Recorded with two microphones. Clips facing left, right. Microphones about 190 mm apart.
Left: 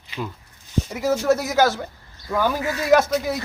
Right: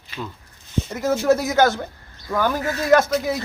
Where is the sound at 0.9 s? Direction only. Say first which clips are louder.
Right 1 dB; 10° left (ahead or behind).